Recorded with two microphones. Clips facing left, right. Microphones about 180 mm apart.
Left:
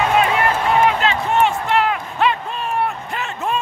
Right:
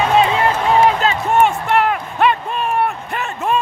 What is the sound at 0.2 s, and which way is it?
Music, 25° right (ahead or behind).